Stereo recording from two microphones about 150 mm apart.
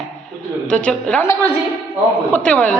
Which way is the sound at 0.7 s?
5° left (ahead or behind).